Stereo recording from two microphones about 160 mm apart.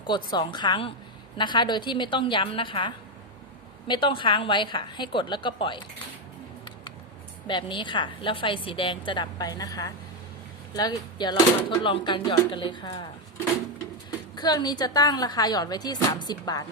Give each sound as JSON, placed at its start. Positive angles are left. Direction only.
{"t": 0.1, "sound": "a woman's voice", "side_deg": 30}
{"t": 7.4, "sound": "a woman's voice", "side_deg": 30}
{"t": 14.3, "sound": "a woman's voice", "side_deg": 25}